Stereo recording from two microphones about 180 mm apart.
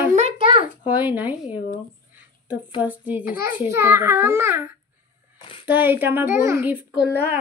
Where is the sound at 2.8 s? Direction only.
10° right (ahead or behind).